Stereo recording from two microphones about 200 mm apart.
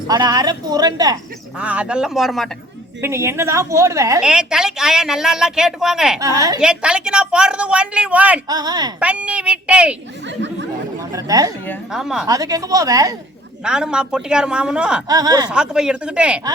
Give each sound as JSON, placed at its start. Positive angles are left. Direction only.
{"t": 0.1, "sound": "speech", "side_deg": -20}
{"t": 1.5, "sound": "a woman's voice", "side_deg": -5}
{"t": 3.0, "sound": "a woman's voice", "side_deg": -15}
{"t": 4.2, "sound": "a woman's voice", "side_deg": -5}
{"t": 6.1, "sound": "a woman's voice", "side_deg": -15}
{"t": 6.6, "sound": "a woman's voice", "side_deg": -5}
{"t": 8.4, "sound": "speech", "side_deg": -20}
{"t": 9.0, "sound": "a woman's voice", "side_deg": -5}
{"t": 11.1, "sound": "a woman's voice", "side_deg": -20}
{"t": 11.9, "sound": "a woman's voice", "side_deg": 0}
{"t": 12.2, "sound": "a woman's voice", "side_deg": -15}
{"t": 13.7, "sound": "a woman's voice", "side_deg": -5}
{"t": 15.0, "sound": "speech", "side_deg": -20}
{"t": 15.4, "sound": "a woman's voice", "side_deg": -5}